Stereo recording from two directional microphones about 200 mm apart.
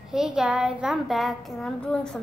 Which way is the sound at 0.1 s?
5° right (ahead or behind).